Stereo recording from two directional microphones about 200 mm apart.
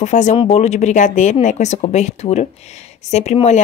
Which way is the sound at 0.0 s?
35° left (ahead or behind).